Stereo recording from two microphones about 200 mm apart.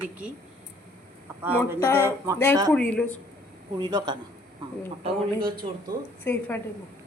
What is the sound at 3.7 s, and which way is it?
Speech, 20° right (ahead or behind).